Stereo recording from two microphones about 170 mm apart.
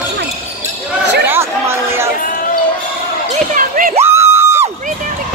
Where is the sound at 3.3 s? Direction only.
50° right (ahead or behind).